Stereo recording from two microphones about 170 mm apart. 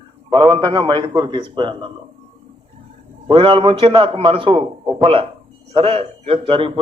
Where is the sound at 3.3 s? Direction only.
30° right (ahead or behind).